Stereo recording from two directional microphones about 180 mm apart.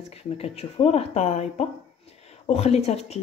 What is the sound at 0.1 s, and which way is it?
Speech, 35° left (ahead or behind).